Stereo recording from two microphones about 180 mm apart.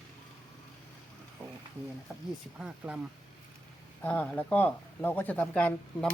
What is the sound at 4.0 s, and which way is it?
Speech, 10° left (ahead or behind).